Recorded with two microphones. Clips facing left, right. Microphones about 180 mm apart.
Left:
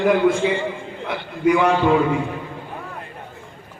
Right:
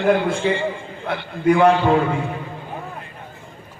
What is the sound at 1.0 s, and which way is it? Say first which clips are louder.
Speech: right 1 dB; 55° right (ahead or behind).